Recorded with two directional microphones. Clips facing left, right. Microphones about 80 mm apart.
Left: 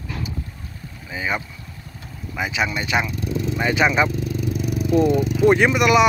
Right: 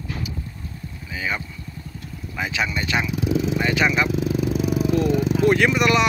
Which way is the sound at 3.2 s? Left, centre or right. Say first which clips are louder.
Right 3 dB; right.